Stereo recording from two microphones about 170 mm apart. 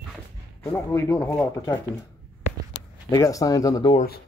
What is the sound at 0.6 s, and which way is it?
Speech, 15° left (ahead or behind).